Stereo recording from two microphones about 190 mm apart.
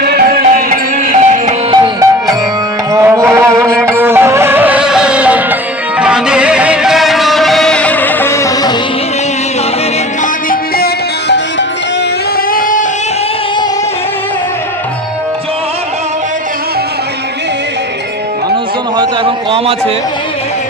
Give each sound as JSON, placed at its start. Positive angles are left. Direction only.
{"t": 0.0, "sound": "music", "side_deg": -55}
{"t": 1.7, "sound": "music", "side_deg": -20}
{"t": 10.5, "sound": "music", "side_deg": 55}
{"t": 12.5, "sound": "singing", "side_deg": 50}
{"t": 18.5, "sound": "a sound", "side_deg": -25}